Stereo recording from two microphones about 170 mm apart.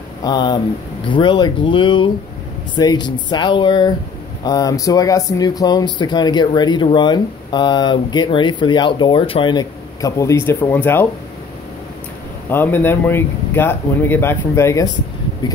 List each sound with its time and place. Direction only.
0.2 s speech: 25° left (ahead or behind)
12.4 s speech: 10° left (ahead or behind)